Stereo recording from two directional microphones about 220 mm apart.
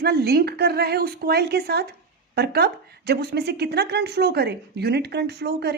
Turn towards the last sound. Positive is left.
turn(degrees=-50)  # may be behind; listen again after turning